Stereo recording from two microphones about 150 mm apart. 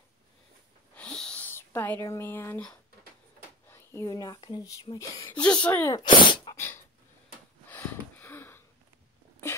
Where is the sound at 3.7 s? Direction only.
15° left (ahead or behind).